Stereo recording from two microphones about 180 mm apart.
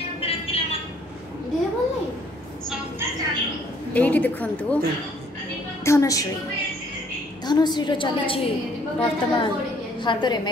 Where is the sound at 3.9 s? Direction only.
10° left (ahead or behind).